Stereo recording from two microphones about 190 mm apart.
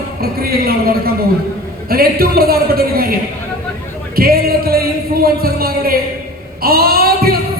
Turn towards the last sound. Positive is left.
turn(degrees=-50)  # may be behind; listen again after turning